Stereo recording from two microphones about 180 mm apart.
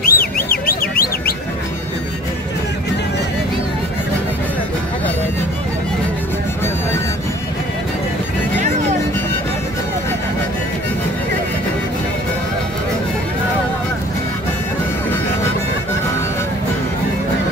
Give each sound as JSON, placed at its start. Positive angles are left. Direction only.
{"t": 0.0, "sound": "bird", "side_deg": 55}